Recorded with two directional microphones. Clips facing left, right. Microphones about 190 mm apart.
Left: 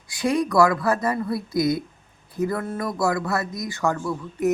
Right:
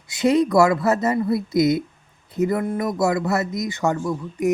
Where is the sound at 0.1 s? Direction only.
20° right (ahead or behind).